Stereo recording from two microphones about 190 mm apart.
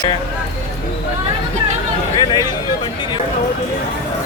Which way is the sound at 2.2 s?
20° left (ahead or behind).